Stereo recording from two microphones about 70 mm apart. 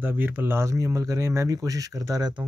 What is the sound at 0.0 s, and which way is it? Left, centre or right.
Speech, right.